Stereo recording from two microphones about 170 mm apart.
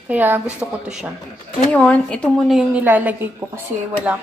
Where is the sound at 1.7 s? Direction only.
10° left (ahead or behind); by 3.6 s 10° right (ahead or behind).